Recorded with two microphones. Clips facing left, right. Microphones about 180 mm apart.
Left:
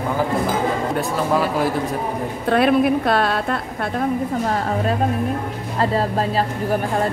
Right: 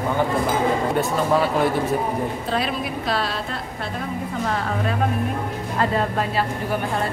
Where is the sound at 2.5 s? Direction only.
55° left (ahead or behind).